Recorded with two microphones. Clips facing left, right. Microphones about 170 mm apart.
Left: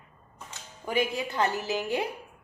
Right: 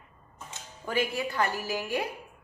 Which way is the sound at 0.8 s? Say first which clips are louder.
Left 1 dB; 15° left (ahead or behind).